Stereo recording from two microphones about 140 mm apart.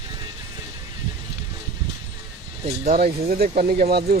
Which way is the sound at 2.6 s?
50° right (ahead or behind).